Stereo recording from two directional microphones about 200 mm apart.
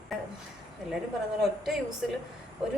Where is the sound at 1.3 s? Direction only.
Centre (ahead or behind).